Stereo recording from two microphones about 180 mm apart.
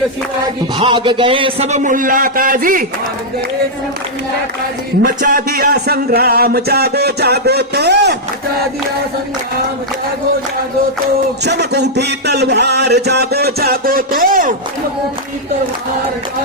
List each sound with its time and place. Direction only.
0.8 s a man's voice: 25° right (ahead or behind); by 2.8 s 50° right (ahead or behind)
5.0 s a man's voice: 55° right (ahead or behind)
11.4 s speech: 70° right (ahead or behind); by 14.5 s 50° right (ahead or behind)